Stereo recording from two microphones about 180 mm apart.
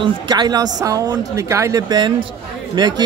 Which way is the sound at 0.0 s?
25° right (ahead or behind).